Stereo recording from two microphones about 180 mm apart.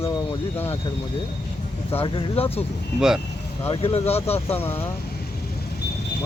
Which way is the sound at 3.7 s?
30° left (ahead or behind).